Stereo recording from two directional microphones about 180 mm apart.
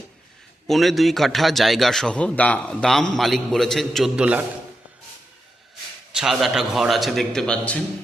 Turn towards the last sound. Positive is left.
turn(degrees=5)  # may be behind; listen again after turning